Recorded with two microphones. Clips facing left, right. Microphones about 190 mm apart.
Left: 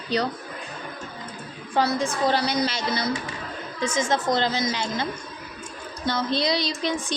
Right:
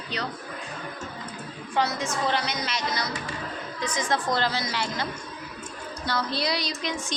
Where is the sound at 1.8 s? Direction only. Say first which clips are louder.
Left 4 dB; 30° left (ahead or behind).